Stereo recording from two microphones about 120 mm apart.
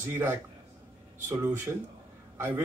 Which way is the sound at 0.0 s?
20° right (ahead or behind).